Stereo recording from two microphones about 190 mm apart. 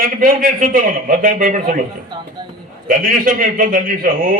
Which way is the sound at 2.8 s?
50° right (ahead or behind).